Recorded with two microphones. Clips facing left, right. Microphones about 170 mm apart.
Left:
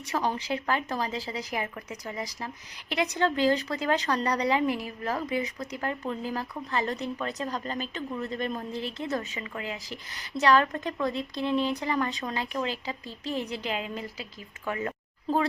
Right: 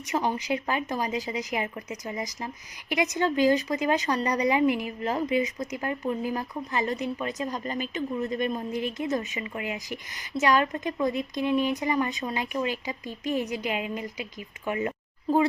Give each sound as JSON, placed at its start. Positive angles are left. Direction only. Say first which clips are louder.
{"t": 0.1, "sound": "a woman's voice", "louder": "right 2 dB", "side_deg": -15}